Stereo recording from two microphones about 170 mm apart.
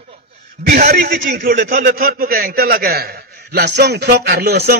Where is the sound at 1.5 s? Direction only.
50° right (ahead or behind).